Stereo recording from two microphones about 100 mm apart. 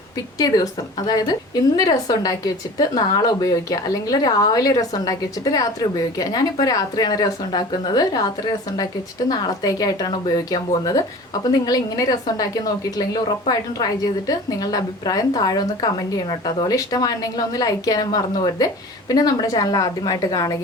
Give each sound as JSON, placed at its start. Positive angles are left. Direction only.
{"t": 0.3, "sound": "a woman's voice", "side_deg": 40}
{"t": 9.3, "sound": "a woman's voice", "side_deg": 35}